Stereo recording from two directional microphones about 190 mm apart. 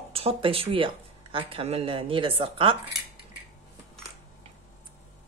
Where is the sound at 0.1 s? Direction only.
30° right (ahead or behind).